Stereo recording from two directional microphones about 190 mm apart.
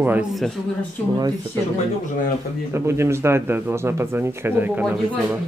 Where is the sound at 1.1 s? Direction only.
20° right (ahead or behind).